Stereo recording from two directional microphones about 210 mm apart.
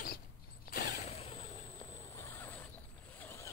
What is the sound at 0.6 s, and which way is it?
Mechanisms, 45° left (ahead or behind).